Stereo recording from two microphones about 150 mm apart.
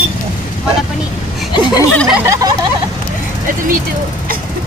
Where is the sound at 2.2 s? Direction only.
20° right (ahead or behind).